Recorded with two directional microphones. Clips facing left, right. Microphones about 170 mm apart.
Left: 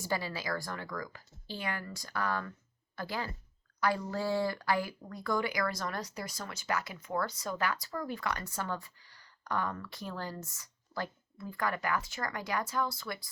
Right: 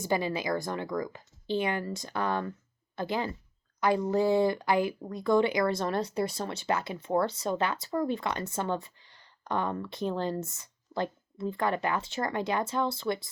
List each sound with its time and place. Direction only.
0.0 s speech: 20° right (ahead or behind)